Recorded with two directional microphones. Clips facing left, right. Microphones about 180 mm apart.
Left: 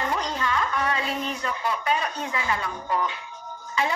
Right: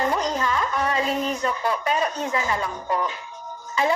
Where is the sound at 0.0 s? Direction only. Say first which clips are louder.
Right 4 dB; 40° right (ahead or behind).